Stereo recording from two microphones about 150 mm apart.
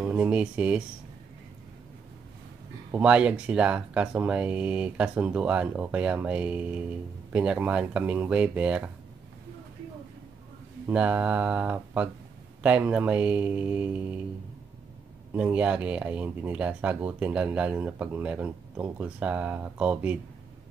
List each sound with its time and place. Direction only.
0.0 s speech: 10° right (ahead or behind)
2.9 s speech: 5° right (ahead or behind)
10.9 s speech: 10° right (ahead or behind)
15.3 s speech: 10° right (ahead or behind)